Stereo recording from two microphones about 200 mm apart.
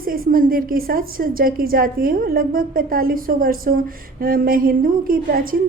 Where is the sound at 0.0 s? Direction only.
45° right (ahead or behind).